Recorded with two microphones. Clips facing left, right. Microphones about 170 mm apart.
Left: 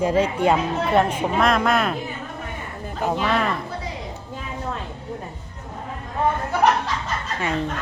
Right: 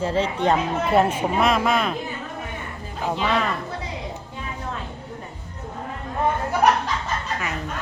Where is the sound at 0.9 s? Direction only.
5° right (ahead or behind).